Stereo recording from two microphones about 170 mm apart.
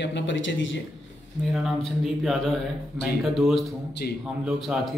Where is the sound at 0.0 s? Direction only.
90° left.